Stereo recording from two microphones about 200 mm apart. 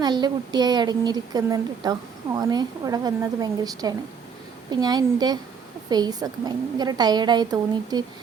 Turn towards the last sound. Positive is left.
turn(degrees=-20)  # may be behind; listen again after turning